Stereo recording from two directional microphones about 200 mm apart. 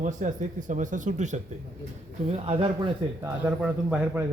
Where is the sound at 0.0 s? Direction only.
40° right (ahead or behind).